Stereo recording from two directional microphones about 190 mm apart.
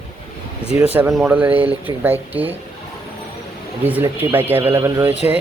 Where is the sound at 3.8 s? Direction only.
10° right (ahead or behind).